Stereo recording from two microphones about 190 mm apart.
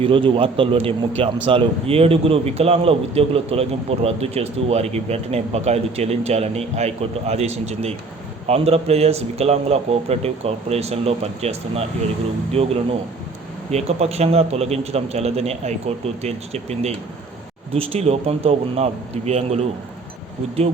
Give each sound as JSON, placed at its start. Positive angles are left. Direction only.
{"t": 0.0, "sound": "a man's voice", "side_deg": -25}